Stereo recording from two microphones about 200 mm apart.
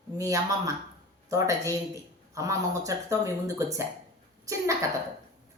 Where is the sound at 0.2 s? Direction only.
15° right (ahead or behind).